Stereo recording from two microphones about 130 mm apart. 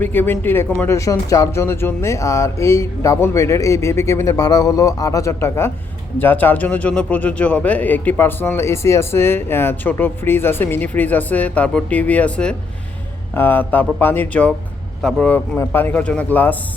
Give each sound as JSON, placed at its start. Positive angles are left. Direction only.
{"t": 0.0, "sound": "a man's voice", "side_deg": 15}